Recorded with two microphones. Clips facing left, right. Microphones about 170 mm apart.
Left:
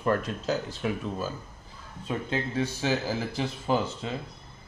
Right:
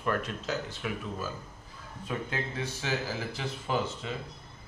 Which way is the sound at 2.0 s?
25° left (ahead or behind).